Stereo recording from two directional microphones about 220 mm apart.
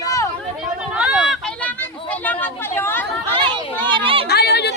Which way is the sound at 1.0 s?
5° right (ahead or behind).